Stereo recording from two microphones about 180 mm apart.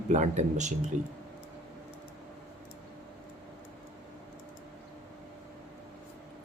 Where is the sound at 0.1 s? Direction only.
40° right (ahead or behind).